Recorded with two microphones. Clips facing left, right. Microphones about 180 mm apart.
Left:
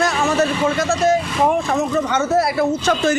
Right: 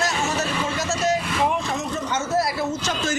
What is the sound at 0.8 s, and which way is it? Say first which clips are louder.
Speech: left 5 dB; 55° left (ahead or behind).